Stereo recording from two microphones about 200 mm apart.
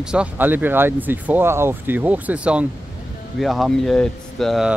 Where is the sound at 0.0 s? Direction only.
5° right (ahead or behind).